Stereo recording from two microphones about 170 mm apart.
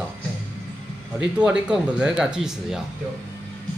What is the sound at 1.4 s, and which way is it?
Speech, 5° right (ahead or behind).